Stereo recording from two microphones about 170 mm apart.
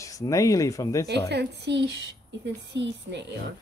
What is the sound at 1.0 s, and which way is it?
A woman's voice, 80° right.